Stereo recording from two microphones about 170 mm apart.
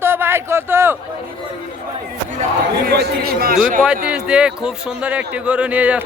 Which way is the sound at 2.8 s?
70° right (ahead or behind).